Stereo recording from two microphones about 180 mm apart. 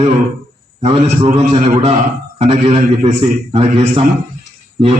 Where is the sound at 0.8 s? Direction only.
35° right (ahead or behind).